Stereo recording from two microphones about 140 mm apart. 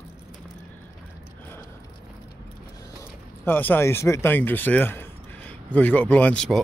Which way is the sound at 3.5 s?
15° left (ahead or behind).